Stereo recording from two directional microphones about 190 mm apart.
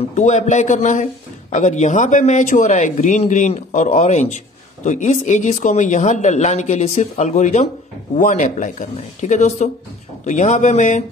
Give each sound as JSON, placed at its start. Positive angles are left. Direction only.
{"t": 0.1, "sound": "speech", "side_deg": 40}